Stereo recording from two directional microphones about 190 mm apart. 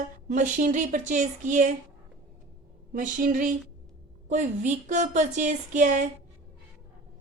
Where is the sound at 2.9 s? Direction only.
45° right (ahead or behind).